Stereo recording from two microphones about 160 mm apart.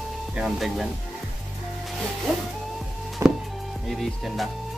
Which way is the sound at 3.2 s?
20° right (ahead or behind).